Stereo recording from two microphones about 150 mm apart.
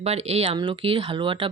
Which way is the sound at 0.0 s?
45° right (ahead or behind).